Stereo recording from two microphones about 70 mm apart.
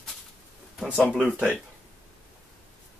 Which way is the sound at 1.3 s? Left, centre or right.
Centre.